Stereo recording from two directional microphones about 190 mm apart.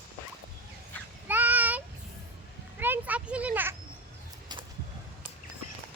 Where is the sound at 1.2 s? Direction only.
10° right (ahead or behind).